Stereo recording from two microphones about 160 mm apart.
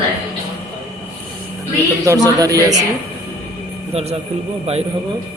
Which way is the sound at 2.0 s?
20° right (ahead or behind).